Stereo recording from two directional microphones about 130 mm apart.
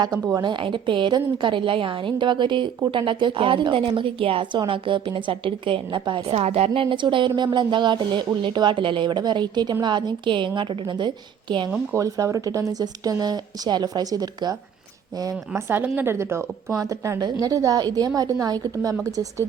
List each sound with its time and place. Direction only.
0.0 s a woman's voice: 30° right (ahead or behind)
6.3 s a woman's voice: 55° right (ahead or behind); by 11.7 s 35° right (ahead or behind)
11.9 s speech: 25° right (ahead or behind)